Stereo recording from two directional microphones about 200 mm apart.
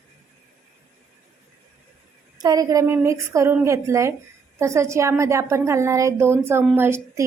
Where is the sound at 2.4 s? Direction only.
20° right (ahead or behind).